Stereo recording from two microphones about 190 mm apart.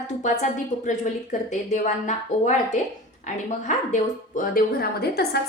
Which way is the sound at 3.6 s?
40° left (ahead or behind).